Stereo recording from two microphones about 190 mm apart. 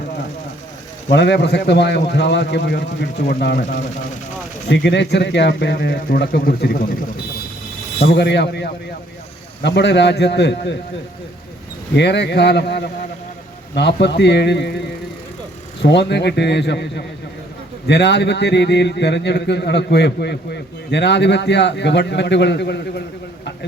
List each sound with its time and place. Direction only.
1.1 s a man's voice: 65° left (ahead or behind)
4.7 s a man's voice: 65° left (ahead or behind)
8.0 s a man's voice: 60° left (ahead or behind)
11.9 s a man's voice: 65° left (ahead or behind)
15.8 s a man's voice: 65° left (ahead or behind)